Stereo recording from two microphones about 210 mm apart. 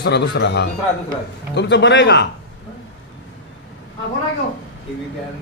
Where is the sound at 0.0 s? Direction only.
55° left (ahead or behind).